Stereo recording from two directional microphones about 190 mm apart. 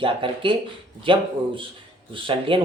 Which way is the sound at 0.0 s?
25° right (ahead or behind).